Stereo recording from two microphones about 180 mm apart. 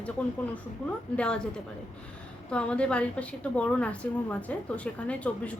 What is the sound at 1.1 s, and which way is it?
A woman's voice, 5° left (ahead or behind).